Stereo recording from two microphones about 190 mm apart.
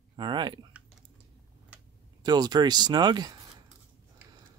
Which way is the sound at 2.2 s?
20° right (ahead or behind).